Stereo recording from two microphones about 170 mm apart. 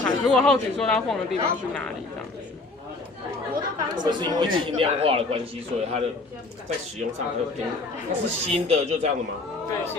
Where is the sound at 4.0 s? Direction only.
25° right (ahead or behind).